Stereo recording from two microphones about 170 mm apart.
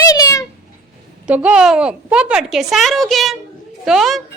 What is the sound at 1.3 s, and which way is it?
A woman's voice, 5° right (ahead or behind).